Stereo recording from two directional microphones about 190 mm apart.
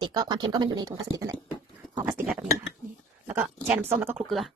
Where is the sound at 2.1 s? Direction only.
5° right (ahead or behind).